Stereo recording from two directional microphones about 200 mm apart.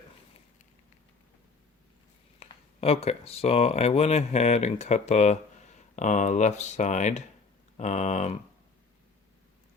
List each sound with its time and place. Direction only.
2.4 s speech: 30° left (ahead or behind)